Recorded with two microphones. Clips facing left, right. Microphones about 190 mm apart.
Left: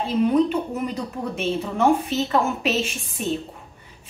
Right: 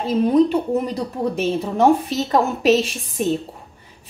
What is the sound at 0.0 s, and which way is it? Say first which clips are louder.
Speech: right 3 dB; 35° right (ahead or behind).